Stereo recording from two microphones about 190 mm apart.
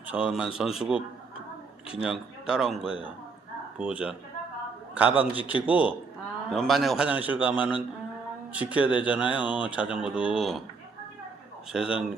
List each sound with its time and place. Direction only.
0.1 s a man's voice: 5° right (ahead or behind)
2.0 s a man's voice: 5° right (ahead or behind)
11.7 s a man's voice: 5° right (ahead or behind)